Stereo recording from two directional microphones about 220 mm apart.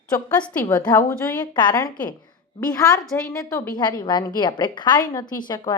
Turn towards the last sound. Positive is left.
turn(degrees=20)  # may be behind; listen again after turning